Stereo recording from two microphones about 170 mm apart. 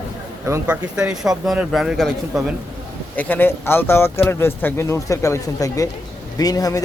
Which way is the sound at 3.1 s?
10° left (ahead or behind).